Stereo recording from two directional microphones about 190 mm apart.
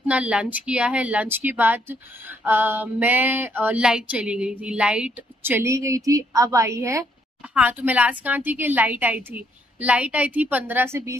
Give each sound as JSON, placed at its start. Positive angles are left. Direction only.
{"t": 0.0, "sound": "speech", "side_deg": -5}